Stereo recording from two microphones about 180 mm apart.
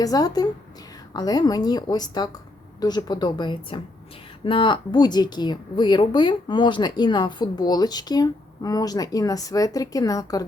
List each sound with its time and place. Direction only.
0.0 s a woman's voice: 20° left (ahead or behind)